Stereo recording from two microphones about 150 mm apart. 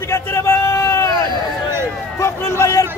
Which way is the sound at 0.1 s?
15° left (ahead or behind).